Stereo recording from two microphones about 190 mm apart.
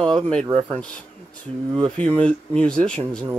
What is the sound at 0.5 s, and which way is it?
Speech, 25° right (ahead or behind).